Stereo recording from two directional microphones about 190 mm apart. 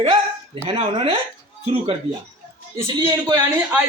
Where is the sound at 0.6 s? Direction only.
30° right (ahead or behind).